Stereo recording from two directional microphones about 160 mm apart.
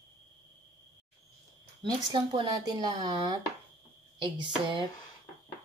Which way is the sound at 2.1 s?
30° right (ahead or behind).